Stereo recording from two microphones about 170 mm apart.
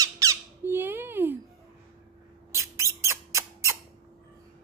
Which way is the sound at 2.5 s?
15° right (ahead or behind).